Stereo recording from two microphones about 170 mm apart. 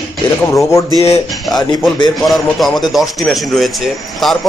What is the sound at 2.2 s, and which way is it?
A man's voice, centre (ahead or behind).